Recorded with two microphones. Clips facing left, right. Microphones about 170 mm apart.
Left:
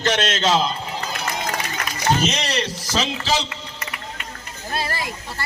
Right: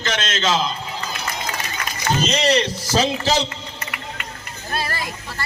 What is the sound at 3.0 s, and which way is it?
Speech, 45° right (ahead or behind).